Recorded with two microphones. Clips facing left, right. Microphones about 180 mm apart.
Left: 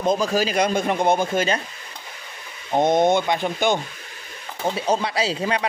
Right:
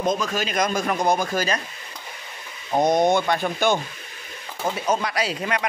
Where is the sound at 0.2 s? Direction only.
35° left (ahead or behind).